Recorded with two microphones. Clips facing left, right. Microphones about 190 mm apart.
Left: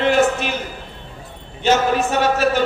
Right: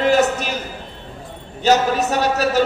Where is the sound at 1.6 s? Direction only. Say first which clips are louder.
Right 1 dB; 40° right (ahead or behind).